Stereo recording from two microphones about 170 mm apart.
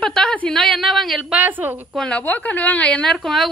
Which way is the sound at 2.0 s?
5° left (ahead or behind).